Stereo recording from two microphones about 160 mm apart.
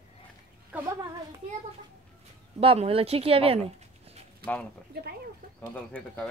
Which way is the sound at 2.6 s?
35° right (ahead or behind).